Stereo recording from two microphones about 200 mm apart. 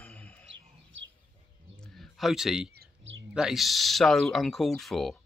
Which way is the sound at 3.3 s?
Centre (ahead or behind).